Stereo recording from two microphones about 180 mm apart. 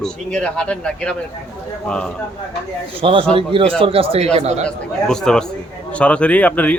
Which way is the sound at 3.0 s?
30° right (ahead or behind).